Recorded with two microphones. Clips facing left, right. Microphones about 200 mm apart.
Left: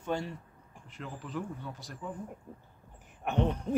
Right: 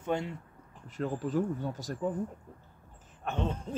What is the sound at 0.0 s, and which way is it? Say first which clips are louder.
Speech: right 2 dB; 20° right (ahead or behind).